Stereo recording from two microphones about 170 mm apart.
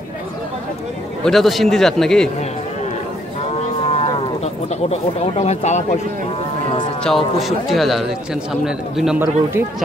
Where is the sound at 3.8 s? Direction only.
40° left (ahead or behind).